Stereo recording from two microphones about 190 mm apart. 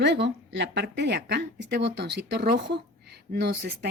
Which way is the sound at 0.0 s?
65° right (ahead or behind).